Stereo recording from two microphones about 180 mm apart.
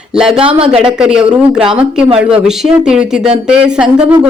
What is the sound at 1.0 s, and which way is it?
A woman's voice, 5° right (ahead or behind).